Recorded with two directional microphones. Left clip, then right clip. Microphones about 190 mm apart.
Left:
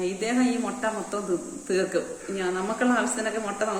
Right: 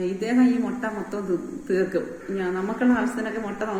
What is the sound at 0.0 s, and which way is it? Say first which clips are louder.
A woman's voice: right 3 dB; 20° left (ahead or behind).